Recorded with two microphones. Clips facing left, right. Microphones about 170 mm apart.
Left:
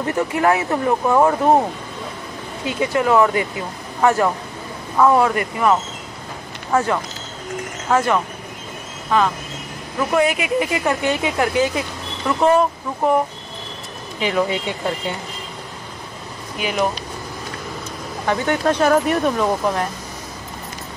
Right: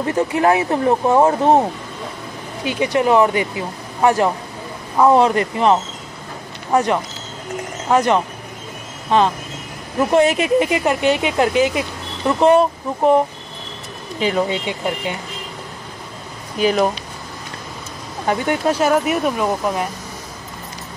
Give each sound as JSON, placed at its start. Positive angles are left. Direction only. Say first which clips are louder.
{"t": 0.0, "sound": "speech", "louder": "right 2 dB", "side_deg": -25}
{"t": 14.3, "sound": "speech", "louder": "left 3 dB", "side_deg": -20}
{"t": 16.5, "sound": "speech", "louder": "right 6 dB", "side_deg": -35}
{"t": 18.7, "sound": "speech", "louder": "left 1 dB", "side_deg": -5}